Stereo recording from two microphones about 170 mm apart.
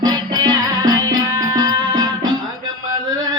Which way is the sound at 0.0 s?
25° right (ahead or behind).